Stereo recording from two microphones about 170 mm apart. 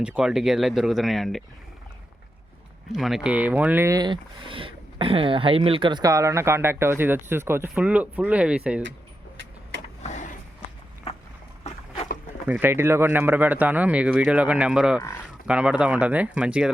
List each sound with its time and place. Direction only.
0.0 s speech: 5° right (ahead or behind)
2.9 s speech: centre (ahead or behind)
10.0 s a sound: 45° left (ahead or behind)
12.5 s speech: 10° right (ahead or behind)